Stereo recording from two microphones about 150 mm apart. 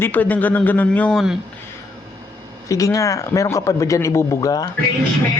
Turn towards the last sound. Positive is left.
turn(degrees=20)  # may be behind; listen again after turning